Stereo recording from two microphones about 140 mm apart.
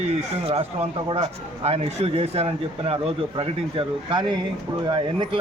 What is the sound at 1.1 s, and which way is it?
Speech, 45° right (ahead or behind).